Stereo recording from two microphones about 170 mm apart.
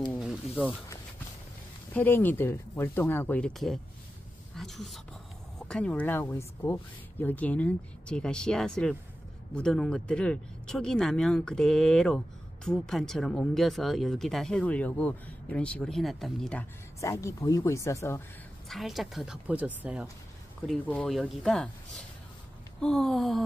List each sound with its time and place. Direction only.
0.1 s a sound: centre (ahead or behind)
2.0 s speech: 10° left (ahead or behind)
17.0 s speech: 15° left (ahead or behind)
18.7 s speech: centre (ahead or behind)
20.6 s speech: 5° left (ahead or behind)